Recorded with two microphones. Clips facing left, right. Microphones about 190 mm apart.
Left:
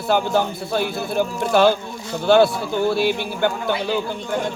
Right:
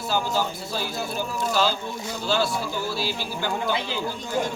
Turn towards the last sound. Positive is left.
turn(degrees=60)  # may be behind; listen again after turning